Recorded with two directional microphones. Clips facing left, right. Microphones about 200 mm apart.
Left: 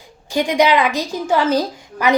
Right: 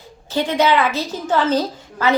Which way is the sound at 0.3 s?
15° left (ahead or behind).